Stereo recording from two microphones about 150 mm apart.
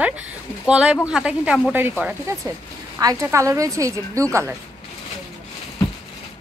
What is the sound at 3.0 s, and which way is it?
A woman's voice, 20° right (ahead or behind).